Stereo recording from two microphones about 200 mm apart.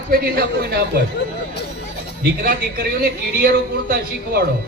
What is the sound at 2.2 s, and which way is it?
Speech, 50° right (ahead or behind).